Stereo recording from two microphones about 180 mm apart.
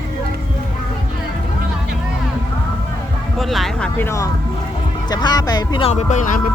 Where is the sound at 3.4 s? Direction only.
Centre (ahead or behind); by 4.3 s 15° left (ahead or behind).